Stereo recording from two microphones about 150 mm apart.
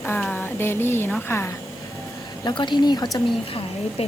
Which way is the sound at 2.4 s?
30° left (ahead or behind).